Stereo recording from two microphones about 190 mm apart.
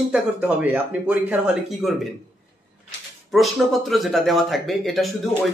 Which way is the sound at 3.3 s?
Centre (ahead or behind).